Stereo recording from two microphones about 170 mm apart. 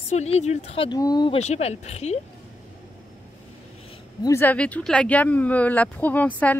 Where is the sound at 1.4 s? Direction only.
40° left (ahead or behind).